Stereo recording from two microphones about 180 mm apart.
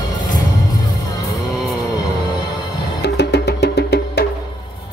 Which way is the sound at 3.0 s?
70° left (ahead or behind).